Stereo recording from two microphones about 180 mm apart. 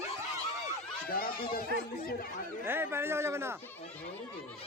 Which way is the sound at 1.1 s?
55° left (ahead or behind).